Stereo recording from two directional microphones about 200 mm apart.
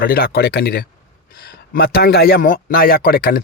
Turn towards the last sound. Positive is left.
turn(degrees=50)  # may be behind; listen again after turning